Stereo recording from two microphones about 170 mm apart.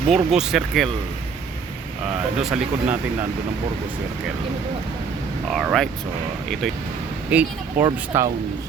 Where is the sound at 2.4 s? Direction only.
5° right (ahead or behind).